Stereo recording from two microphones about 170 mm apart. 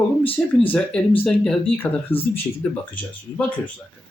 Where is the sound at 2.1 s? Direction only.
35° left (ahead or behind).